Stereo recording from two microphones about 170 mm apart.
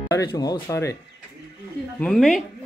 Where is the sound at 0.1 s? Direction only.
20° left (ahead or behind).